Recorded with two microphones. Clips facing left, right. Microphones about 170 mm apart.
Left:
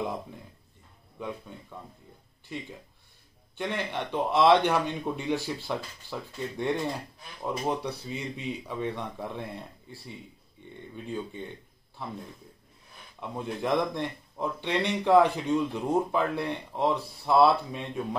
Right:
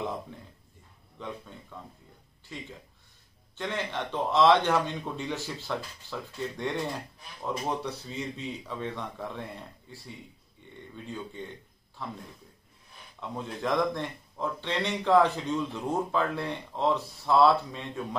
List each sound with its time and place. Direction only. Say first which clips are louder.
1.2 s speech: left 3 dB; 10° left (ahead or behind)
3.5 s speech: left 1 dB; 15° left (ahead or behind)
12.0 s speech: left 1 dB; 15° left (ahead or behind)
13.2 s speech: left 1 dB; 15° left (ahead or behind)